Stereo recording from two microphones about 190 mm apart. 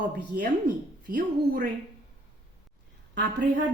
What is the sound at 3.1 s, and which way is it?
Speech, 65° right (ahead or behind).